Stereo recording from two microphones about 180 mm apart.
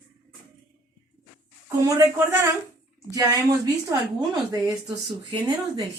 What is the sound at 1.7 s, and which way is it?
Speech, 15° right (ahead or behind).